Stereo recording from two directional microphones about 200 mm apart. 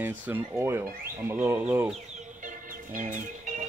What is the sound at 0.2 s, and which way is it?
Speech, 10° right (ahead or behind).